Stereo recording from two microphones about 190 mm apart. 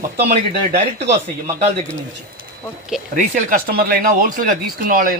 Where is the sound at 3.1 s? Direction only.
45° right (ahead or behind).